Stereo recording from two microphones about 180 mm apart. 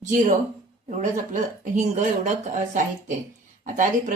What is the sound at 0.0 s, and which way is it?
Speech, 45° right (ahead or behind).